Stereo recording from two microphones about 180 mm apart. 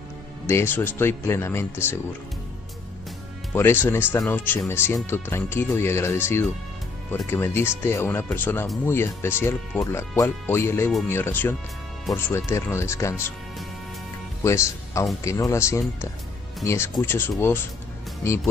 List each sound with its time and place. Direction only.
0.5 s speech: 15° left (ahead or behind)
3.5 s speech: 10° left (ahead or behind)
14.4 s speech: 15° left (ahead or behind)